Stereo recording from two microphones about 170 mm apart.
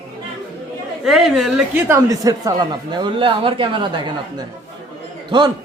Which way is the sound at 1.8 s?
20° right (ahead or behind).